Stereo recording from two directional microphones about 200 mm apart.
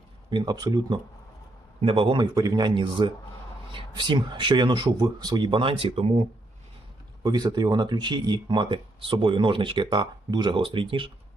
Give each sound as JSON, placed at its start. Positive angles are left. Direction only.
{"t": 0.3, "sound": "speech", "side_deg": -20}